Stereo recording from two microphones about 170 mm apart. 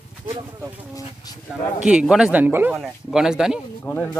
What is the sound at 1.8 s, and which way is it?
Speech, 5° right (ahead or behind).